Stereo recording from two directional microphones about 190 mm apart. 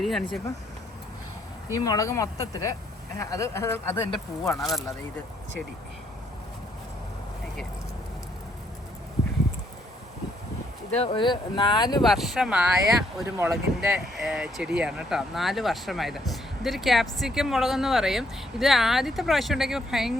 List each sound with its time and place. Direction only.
0.0 s speech: centre (ahead or behind)
1.8 s speech: 20° left (ahead or behind)
10.9 s speech: 30° left (ahead or behind)
12.0 s speech: centre (ahead or behind)